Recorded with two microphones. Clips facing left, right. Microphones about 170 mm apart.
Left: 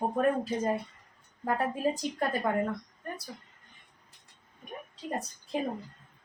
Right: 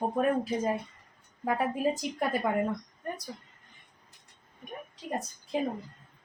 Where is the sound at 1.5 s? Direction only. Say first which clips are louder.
Right 1 dB; 5° right (ahead or behind).